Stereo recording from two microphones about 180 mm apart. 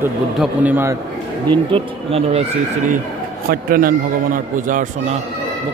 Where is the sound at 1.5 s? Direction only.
30° right (ahead or behind).